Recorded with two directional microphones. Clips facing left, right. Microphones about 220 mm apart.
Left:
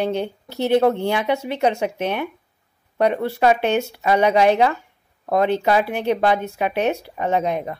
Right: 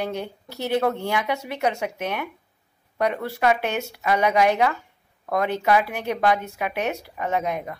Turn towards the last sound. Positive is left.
turn(degrees=30)  # may be behind; listen again after turning